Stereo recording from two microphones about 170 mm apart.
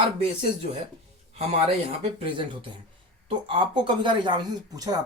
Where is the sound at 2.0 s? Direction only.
30° right (ahead or behind).